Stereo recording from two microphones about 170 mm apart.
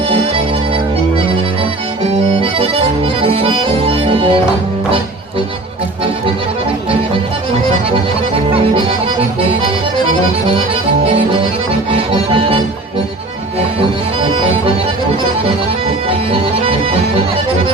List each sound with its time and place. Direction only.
2.3 s accordion: 30° right (ahead or behind)
11.9 s music: 30° right (ahead or behind)
14.2 s music: 30° right (ahead or behind)
16.0 s music: 30° right (ahead or behind)